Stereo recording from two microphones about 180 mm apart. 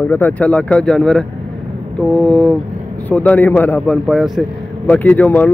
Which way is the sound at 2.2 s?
5° left (ahead or behind).